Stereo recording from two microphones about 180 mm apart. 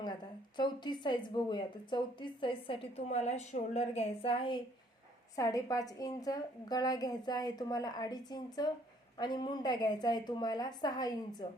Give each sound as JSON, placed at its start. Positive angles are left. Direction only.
{"t": 0.5, "sound": "speech", "side_deg": 25}
{"t": 5.4, "sound": "speech", "side_deg": 20}